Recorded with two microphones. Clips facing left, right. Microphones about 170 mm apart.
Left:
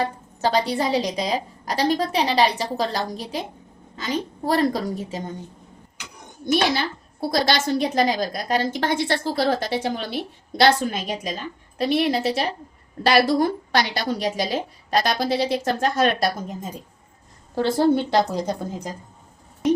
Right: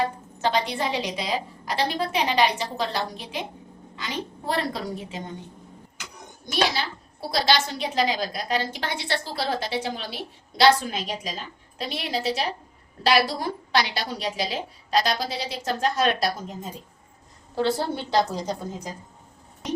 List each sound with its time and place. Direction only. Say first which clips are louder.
0.0 s a woman's voice: left 2 dB; 35° left (ahead or behind)
6.4 s a woman's voice: left 5 dB; 55° left (ahead or behind)
17.5 s a woman's voice: left 6 dB; 50° left (ahead or behind)